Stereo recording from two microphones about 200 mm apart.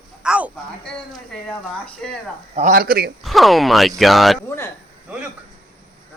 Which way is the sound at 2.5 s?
45° right (ahead or behind).